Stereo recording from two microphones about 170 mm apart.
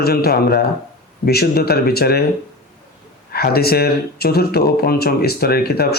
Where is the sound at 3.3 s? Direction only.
65° left (ahead or behind).